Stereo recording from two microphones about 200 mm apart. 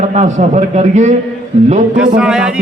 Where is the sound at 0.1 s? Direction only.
35° right (ahead or behind).